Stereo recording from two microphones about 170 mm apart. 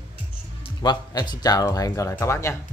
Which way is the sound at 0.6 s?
25° left (ahead or behind).